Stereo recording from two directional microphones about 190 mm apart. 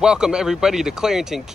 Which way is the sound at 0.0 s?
5° right (ahead or behind).